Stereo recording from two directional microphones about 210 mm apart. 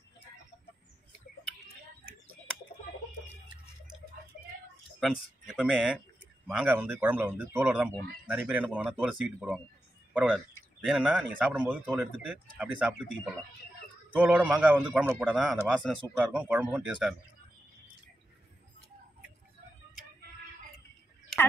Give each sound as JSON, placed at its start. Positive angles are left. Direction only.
{"t": 5.0, "sound": "a man's voice", "side_deg": -5}
{"t": 16.3, "sound": "a man's voice", "side_deg": -10}